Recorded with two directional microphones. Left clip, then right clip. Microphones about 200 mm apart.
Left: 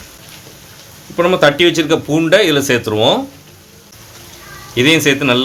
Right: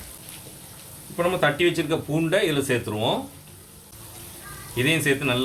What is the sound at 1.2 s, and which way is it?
Speech, 50° left (ahead or behind).